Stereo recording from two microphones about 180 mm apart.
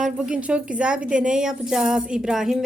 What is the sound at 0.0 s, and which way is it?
A woman's voice, 5° right (ahead or behind).